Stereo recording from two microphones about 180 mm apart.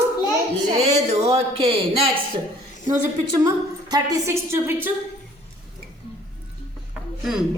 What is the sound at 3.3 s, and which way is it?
A woman's voice, 20° right (ahead or behind).